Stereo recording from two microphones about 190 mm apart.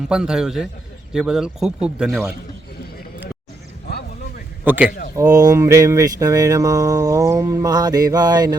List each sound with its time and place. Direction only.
0.1 s speech: 5° right (ahead or behind)
4.6 s a man's voice: 10° right (ahead or behind)
4.9 s speech: 45° left (ahead or behind)
5.1 s a sound: 20° right (ahead or behind)